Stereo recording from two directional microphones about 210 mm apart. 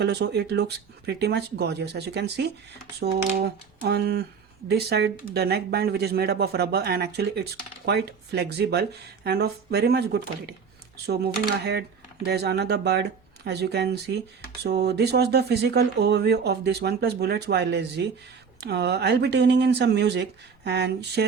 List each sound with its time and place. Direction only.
0.0 s speech: 55° right (ahead or behind)